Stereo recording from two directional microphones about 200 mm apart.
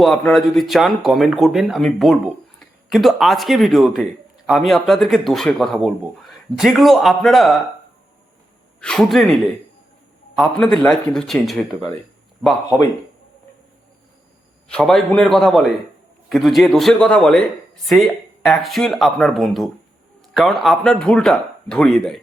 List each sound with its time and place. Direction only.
0.0 s speech: centre (ahead or behind)
8.8 s speech: 5° left (ahead or behind)
14.7 s speech: centre (ahead or behind)